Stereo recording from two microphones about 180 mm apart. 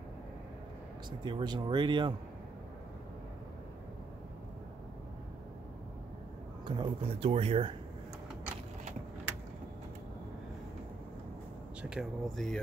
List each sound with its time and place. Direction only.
1.2 s speech: 25° right (ahead or behind)
6.6 s speech: 30° right (ahead or behind)
11.8 s speech: 5° right (ahead or behind)